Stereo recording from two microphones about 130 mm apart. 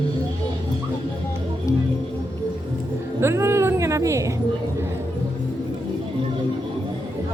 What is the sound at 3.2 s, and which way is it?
Speech, 20° right (ahead or behind).